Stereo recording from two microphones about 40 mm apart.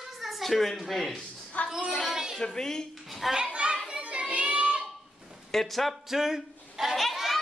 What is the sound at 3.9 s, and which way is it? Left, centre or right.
Child singing, right.